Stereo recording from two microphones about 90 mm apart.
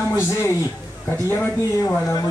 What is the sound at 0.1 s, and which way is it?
Speech, 30° left (ahead or behind).